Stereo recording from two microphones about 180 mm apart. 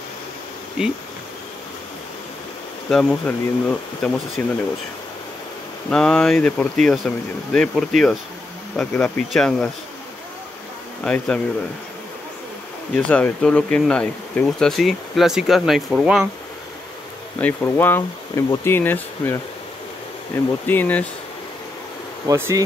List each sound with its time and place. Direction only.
2.9 s speech: 5° left (ahead or behind)
5.9 s speech: 5° left (ahead or behind)
11.1 s speech: 5° left (ahead or behind)
12.9 s speech: 10° left (ahead or behind)
17.4 s speech: 10° left (ahead or behind)
20.6 s speech: 10° left (ahead or behind)
22.3 s bee: 15° right (ahead or behind)